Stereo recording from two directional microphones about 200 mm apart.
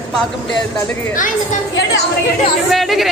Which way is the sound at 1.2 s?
40° left (ahead or behind).